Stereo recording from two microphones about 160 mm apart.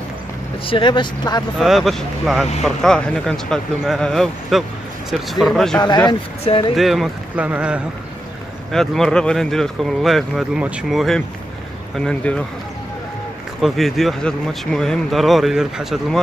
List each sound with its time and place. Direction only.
0.7 s speech: 30° left (ahead or behind)
1.6 s speech: centre (ahead or behind)
5.8 s speech: 25° left (ahead or behind)
6.7 s speech: centre (ahead or behind)
8.7 s speech: 5° left (ahead or behind)
13.6 s speech: centre (ahead or behind)